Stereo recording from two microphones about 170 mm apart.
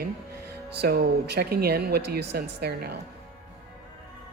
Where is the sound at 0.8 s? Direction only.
70° right (ahead or behind).